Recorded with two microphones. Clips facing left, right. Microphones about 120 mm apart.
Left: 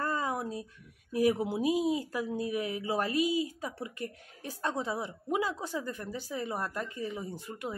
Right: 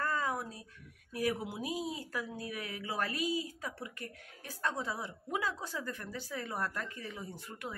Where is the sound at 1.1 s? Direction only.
25° left (ahead or behind).